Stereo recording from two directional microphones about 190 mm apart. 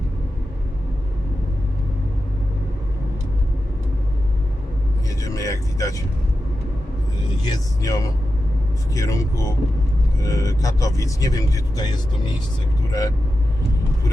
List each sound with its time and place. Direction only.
5.2 s vehicle: 15° left (ahead or behind)
7.4 s speech: 20° left (ahead or behind)
12.9 s speech: 20° left (ahead or behind)